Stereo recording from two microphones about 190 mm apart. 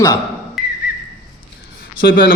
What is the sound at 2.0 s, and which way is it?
Speech, 60° left (ahead or behind).